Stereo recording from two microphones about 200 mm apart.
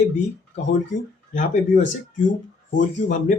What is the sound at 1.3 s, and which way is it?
Speech, 40° left (ahead or behind).